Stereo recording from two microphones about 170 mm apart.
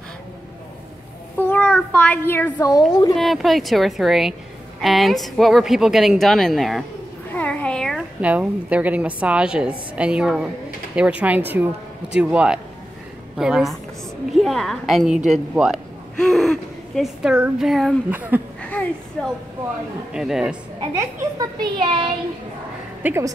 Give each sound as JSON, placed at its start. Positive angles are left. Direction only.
{"t": 1.3, "sound": "a child's voice", "side_deg": 10}
{"t": 3.2, "sound": "a woman's voice", "side_deg": 0}
{"t": 7.3, "sound": "cat", "side_deg": 5}
{"t": 8.2, "sound": "a woman's voice", "side_deg": -10}
{"t": 18.6, "sound": "a sound", "side_deg": 5}
{"t": 20.1, "sound": "a woman's voice", "side_deg": -5}
{"t": 20.8, "sound": "a child's voice", "side_deg": -25}
{"t": 23.0, "sound": "a woman's voice", "side_deg": -15}